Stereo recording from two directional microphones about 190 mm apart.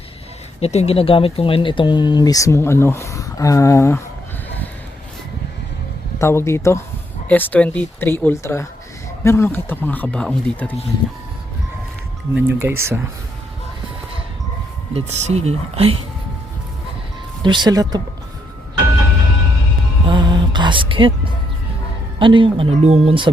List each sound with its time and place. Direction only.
0.6 s speech: 35° left (ahead or behind); by 4.0 s 15° left (ahead or behind)
6.1 s speech: 15° left (ahead or behind)
12.3 s speech: 10° right (ahead or behind)
14.9 s speech: 35° right (ahead or behind)
17.4 s speech: 25° right (ahead or behind)
20.1 s music: 25° right (ahead or behind)
22.2 s speech: 25° right (ahead or behind)